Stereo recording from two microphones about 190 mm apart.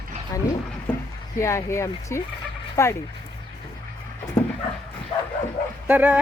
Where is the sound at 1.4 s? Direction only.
15° left (ahead or behind).